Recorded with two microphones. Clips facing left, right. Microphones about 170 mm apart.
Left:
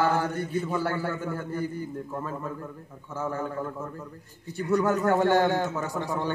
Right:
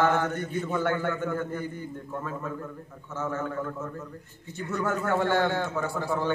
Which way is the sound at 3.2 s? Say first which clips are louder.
Even; 30° left (ahead or behind).